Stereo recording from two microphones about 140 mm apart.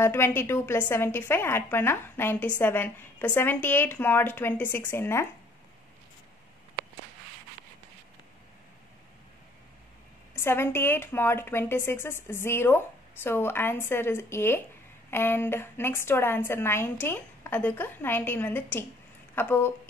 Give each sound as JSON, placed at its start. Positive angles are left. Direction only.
{"t": 0.0, "sound": "speech", "side_deg": 15}
{"t": 10.3, "sound": "speech", "side_deg": 15}